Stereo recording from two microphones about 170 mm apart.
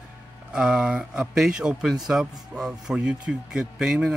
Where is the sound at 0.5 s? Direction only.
5° right (ahead or behind).